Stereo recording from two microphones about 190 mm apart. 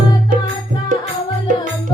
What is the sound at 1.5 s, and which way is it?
Music, 45° right (ahead or behind).